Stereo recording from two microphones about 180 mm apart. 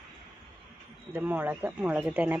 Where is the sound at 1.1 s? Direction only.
10° right (ahead or behind).